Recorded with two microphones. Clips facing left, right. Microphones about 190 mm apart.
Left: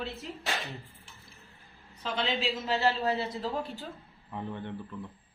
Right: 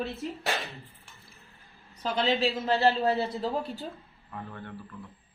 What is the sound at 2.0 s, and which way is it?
A man's voice, 35° right (ahead or behind).